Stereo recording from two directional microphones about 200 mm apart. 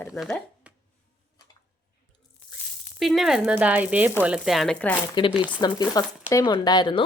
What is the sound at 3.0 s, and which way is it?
Speech, centre (ahead or behind).